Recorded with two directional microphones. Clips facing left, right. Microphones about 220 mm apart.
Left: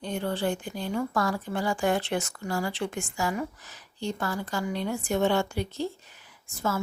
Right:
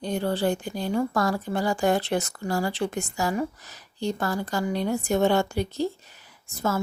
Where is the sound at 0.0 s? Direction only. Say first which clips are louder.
Right 4 dB; 35° right (ahead or behind).